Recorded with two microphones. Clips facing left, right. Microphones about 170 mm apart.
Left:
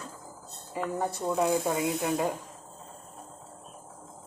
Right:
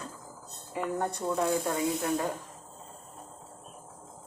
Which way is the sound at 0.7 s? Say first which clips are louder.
Even; centre (ahead or behind).